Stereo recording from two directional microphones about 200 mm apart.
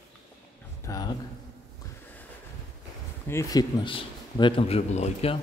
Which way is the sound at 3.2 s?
15° left (ahead or behind).